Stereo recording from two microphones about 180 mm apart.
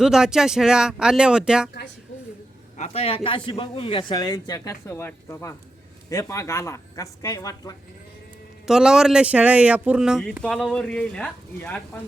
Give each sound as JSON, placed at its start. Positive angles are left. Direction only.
{"t": 0.0, "sound": "speech", "side_deg": -5}
{"t": 2.7, "sound": "a man's voice", "side_deg": 35}
{"t": 8.6, "sound": "speech", "side_deg": -5}